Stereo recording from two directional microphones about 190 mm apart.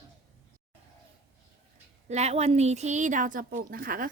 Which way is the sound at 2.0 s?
35° right (ahead or behind).